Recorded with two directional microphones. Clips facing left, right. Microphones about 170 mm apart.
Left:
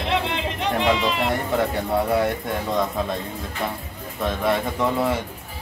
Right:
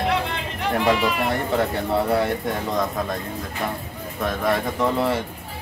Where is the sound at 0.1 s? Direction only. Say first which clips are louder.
Left 1 dB; 20° left (ahead or behind).